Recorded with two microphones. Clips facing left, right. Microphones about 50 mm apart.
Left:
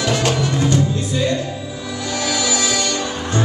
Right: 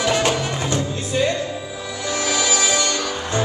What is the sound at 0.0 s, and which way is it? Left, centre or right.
Music, centre.